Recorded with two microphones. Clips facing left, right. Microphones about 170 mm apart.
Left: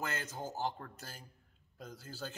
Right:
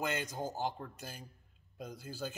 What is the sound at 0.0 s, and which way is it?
Speech, 15° right (ahead or behind).